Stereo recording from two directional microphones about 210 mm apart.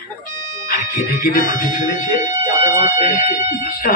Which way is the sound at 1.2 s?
40° left (ahead or behind).